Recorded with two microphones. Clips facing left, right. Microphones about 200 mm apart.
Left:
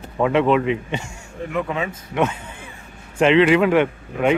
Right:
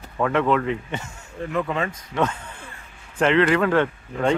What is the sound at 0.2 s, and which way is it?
Speech, 20° left (ahead or behind).